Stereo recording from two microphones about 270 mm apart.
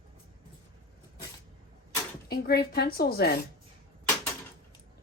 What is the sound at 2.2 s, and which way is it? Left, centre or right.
A woman's voice, left.